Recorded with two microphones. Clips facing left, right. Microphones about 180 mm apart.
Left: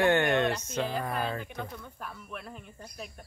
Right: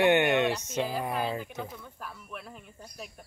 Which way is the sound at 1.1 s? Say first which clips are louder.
Right 1 dB; 5° right (ahead or behind).